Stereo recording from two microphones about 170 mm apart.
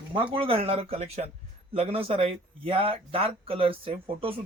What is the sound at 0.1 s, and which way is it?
Speech, 30° right (ahead or behind).